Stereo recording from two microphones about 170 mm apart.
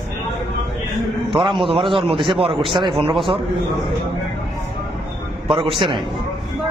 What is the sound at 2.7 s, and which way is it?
Speech, 30° right (ahead or behind).